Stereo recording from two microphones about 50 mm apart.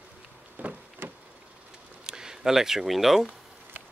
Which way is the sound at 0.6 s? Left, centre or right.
Right.